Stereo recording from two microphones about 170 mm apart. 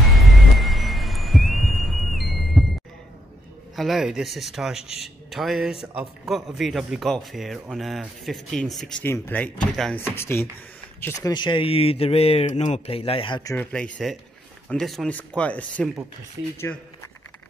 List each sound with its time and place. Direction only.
0.1 s a sound: centre (ahead or behind)
3.7 s a man's voice: centre (ahead or behind)
9.0 s speech: 15° left (ahead or behind); by 13.4 s 30° left (ahead or behind)
13.6 s a man's voice: 5° left (ahead or behind)
16.4 s speech: 20° right (ahead or behind)